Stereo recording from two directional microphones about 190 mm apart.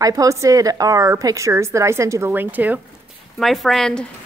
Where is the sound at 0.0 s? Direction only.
15° right (ahead or behind); by 4.0 s centre (ahead or behind).